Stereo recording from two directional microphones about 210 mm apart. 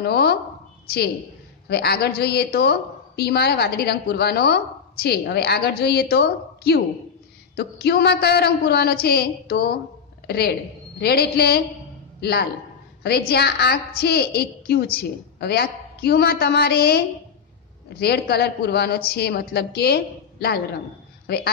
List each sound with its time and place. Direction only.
0.0 s a woman's voice: 50° left (ahead or behind)